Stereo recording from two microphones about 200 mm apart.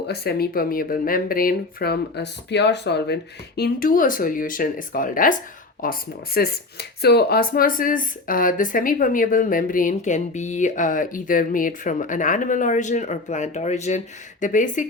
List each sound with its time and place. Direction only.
0.1 s speech: 50° left (ahead or behind)